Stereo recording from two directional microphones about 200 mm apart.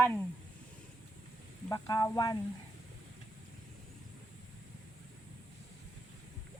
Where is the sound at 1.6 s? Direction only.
15° left (ahead or behind).